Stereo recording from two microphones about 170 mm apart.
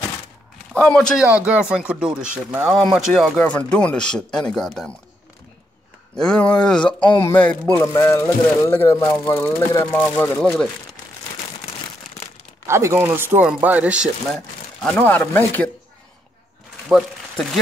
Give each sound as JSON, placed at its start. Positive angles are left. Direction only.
{"t": 0.7, "sound": "speech", "side_deg": 5}
{"t": 1.4, "sound": "speech", "side_deg": -5}
{"t": 6.1, "sound": "speech", "side_deg": 5}
{"t": 6.8, "sound": "speech", "side_deg": 25}
{"t": 7.2, "sound": "speech", "side_deg": 15}
{"t": 12.6, "sound": "speech", "side_deg": -15}
{"t": 16.9, "sound": "speech", "side_deg": 0}